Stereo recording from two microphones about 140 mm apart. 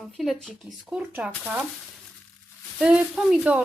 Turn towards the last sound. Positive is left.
turn(degrees=-5)  # may be behind; listen again after turning